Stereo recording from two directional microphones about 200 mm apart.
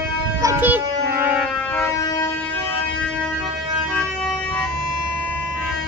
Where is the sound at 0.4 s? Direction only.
10° right (ahead or behind).